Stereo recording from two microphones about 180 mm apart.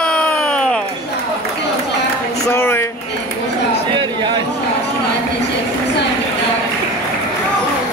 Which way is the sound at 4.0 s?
25° right (ahead or behind).